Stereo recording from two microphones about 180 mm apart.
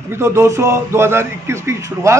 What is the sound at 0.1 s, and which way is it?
A man's voice, 15° right (ahead or behind).